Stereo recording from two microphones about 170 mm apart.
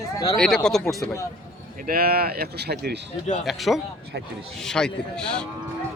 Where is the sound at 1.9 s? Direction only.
60° right (ahead or behind).